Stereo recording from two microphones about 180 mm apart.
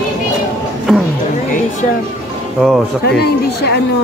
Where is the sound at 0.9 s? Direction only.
Centre (ahead or behind).